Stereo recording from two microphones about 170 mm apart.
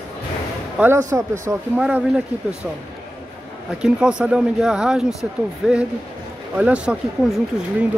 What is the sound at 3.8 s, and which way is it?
Speech, 5° right (ahead or behind).